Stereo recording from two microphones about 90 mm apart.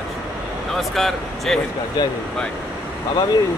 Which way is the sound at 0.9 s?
Centre (ahead or behind).